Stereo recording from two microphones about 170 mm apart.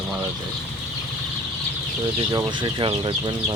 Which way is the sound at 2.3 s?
30° right (ahead or behind).